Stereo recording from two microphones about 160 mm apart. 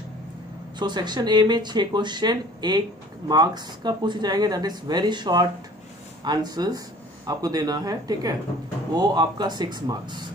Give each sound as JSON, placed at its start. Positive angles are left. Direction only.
{"t": 0.7, "sound": "speech", "side_deg": -25}